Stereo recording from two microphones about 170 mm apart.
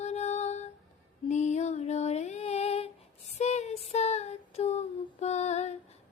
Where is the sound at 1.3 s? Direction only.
45° left (ahead or behind).